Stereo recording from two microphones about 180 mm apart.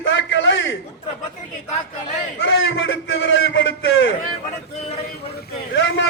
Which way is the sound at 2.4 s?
90° left.